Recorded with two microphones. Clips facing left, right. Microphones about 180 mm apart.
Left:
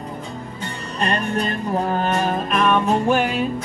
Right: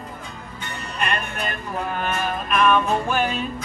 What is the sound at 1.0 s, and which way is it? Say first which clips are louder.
Music: left 5 dB; 35° left (ahead or behind).